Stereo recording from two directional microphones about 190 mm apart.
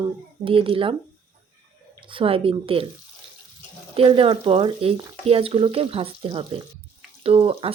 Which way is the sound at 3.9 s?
30° right (ahead or behind).